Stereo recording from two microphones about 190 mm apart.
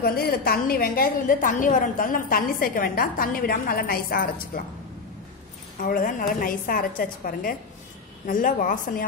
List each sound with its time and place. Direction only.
0.0 s a woman's voice: 55° left (ahead or behind)
5.9 s a woman's voice: 45° left (ahead or behind)